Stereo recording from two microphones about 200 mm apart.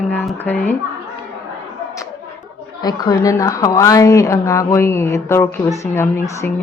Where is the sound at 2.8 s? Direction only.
20° left (ahead or behind).